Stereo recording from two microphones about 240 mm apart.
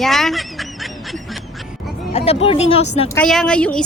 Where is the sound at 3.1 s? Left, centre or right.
Centre.